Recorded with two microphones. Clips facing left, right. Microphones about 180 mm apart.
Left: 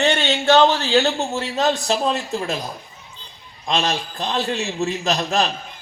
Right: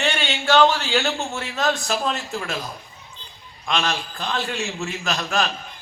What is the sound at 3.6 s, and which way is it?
A man's voice, 35° left (ahead or behind).